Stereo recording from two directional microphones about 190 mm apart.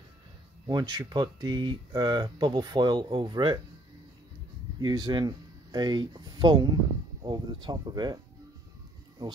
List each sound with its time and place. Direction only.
0.7 s speech: 20° right (ahead or behind)
4.7 s speech: 20° right (ahead or behind)